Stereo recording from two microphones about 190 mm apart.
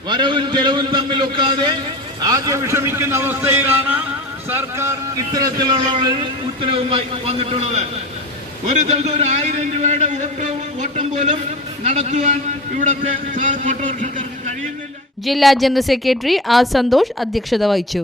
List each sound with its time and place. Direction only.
0.1 s a man's voice: 25° right (ahead or behind); by 14.5 s 40° right (ahead or behind)
15.3 s a woman's voice: centre (ahead or behind)